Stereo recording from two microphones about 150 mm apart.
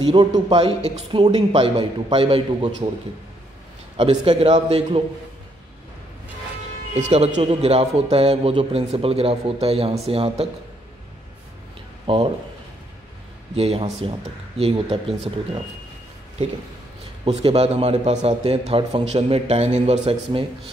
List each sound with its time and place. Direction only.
0.0 s speech: 30° right (ahead or behind)
3.9 s speech: 40° right (ahead or behind)
6.9 s speech: 45° right (ahead or behind)
12.1 s speech: 35° right (ahead or behind)
13.6 s speech: 40° right (ahead or behind)
17.2 s speech: 40° right (ahead or behind)